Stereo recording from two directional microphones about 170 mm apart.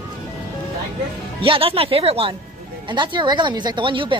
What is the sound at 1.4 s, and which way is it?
Speech, 35° right (ahead or behind).